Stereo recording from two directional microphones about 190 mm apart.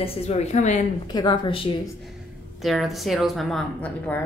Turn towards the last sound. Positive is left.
turn(degrees=5)  # may be behind; listen again after turning